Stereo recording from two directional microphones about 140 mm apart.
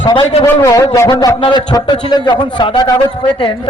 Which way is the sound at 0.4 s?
20° left (ahead or behind).